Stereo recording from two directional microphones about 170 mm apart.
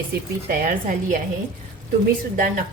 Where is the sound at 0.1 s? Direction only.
55° right (ahead or behind).